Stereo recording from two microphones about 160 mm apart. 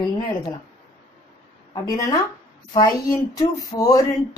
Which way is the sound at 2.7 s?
25° left (ahead or behind).